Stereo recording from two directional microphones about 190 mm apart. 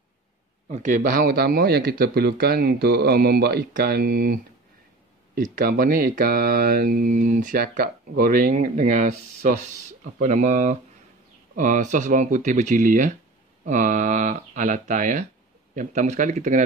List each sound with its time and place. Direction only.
0.7 s speech: 40° right (ahead or behind)
10.2 s speech: 40° right (ahead or behind)